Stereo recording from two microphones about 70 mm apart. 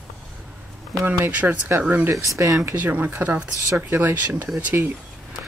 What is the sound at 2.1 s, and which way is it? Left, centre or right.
Speech, right.